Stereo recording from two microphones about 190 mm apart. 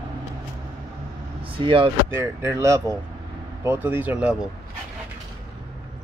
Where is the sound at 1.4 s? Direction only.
25° right (ahead or behind).